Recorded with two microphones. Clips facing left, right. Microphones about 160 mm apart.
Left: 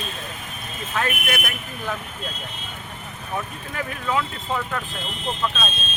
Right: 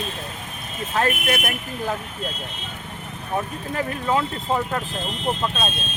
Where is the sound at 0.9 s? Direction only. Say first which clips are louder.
Right 4 dB; 35° right (ahead or behind).